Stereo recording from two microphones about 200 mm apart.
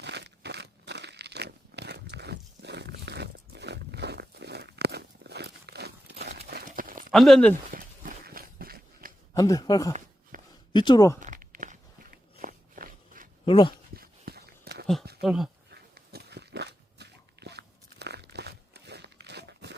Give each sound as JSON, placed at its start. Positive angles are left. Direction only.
{"t": 0.0, "sound": "crumpling", "side_deg": -60}
{"t": 6.5, "sound": "horse", "side_deg": -45}
{"t": 7.1, "sound": "speech", "side_deg": 0}
{"t": 7.7, "sound": "a sound", "side_deg": -45}
{"t": 9.3, "sound": "speech", "side_deg": 15}
{"t": 10.3, "sound": "a sound", "side_deg": -45}
{"t": 10.7, "sound": "speech", "side_deg": 25}
{"t": 11.2, "sound": "a sound", "side_deg": -40}
{"t": 13.4, "sound": "speech", "side_deg": 25}
{"t": 13.9, "sound": "dog", "side_deg": -50}
{"t": 15.2, "sound": "speech", "side_deg": 0}
{"t": 15.7, "sound": "pig", "side_deg": -55}